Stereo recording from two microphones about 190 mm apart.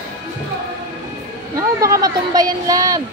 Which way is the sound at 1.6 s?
15° right (ahead or behind).